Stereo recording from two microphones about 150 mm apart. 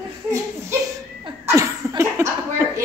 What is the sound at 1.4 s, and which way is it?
Laughter, 20° right (ahead or behind).